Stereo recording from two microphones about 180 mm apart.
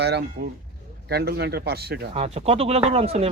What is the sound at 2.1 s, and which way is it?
Speech, 35° right (ahead or behind).